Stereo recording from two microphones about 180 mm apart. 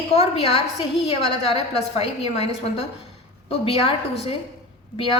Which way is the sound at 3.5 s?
30° left (ahead or behind).